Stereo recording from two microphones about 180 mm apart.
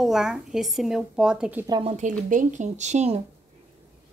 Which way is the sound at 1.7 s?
30° right (ahead or behind).